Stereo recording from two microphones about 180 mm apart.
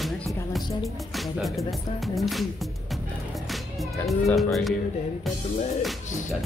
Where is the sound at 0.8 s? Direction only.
Centre (ahead or behind).